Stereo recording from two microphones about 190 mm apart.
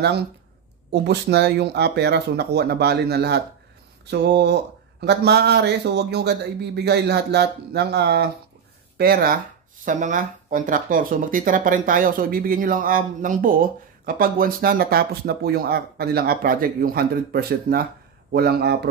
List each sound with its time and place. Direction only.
1.0 s speech: 60° right (ahead or behind)